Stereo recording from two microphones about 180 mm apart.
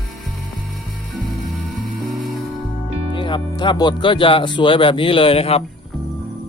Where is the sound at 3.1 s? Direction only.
25° left (ahead or behind).